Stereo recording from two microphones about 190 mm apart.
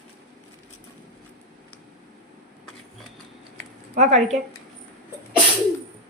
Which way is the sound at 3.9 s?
35° right (ahead or behind).